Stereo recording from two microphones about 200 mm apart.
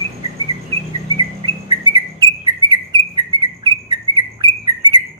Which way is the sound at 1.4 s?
20° right (ahead or behind).